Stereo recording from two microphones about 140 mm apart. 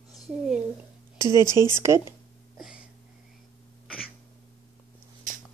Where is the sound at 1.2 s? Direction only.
20° right (ahead or behind).